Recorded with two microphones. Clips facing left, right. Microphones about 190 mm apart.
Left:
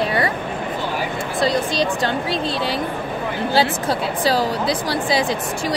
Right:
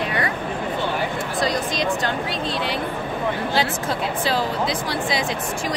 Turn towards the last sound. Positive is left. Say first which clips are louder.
# left 4 dB
turn(degrees=35)  # may be behind; listen again after turning